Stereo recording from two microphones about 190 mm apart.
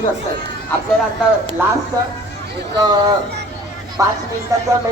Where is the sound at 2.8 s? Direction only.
25° right (ahead or behind).